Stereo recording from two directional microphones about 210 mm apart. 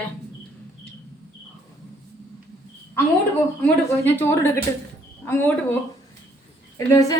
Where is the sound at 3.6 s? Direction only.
10° left (ahead or behind).